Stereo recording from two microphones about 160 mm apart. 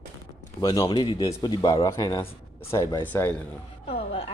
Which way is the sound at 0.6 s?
25° left (ahead or behind).